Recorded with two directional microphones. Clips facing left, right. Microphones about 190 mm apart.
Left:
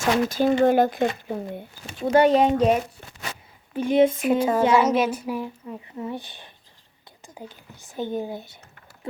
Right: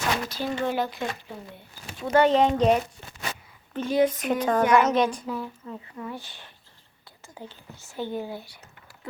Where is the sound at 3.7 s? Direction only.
15° left (ahead or behind).